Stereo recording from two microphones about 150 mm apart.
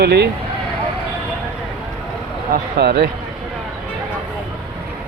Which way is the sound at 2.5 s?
90° right.